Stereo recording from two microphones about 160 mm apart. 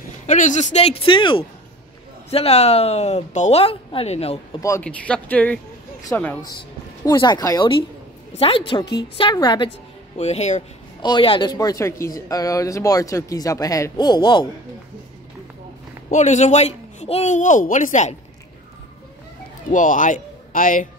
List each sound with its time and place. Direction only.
0.3 s speech: 50° left (ahead or behind)
4.6 s speech: 20° left (ahead or behind)
4.8 s speech: 5° left (ahead or behind); by 7.7 s 25° left (ahead or behind)
8.4 s speech: 35° left (ahead or behind)
8.8 s a woman's voice: 90° left
9.2 s speech: 25° left (ahead or behind)
10.1 s speech: 40° left (ahead or behind)
11.0 s speech: 30° left (ahead or behind)
16.1 s speech: 50° left (ahead or behind)
19.7 s speech: 55° left (ahead or behind)